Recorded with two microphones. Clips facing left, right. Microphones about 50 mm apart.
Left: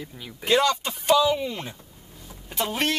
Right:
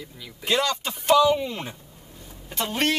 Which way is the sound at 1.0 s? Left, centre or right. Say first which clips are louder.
Right 2 dB; centre.